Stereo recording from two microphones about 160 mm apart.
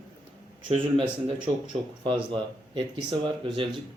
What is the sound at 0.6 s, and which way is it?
Speech, 35° right (ahead or behind).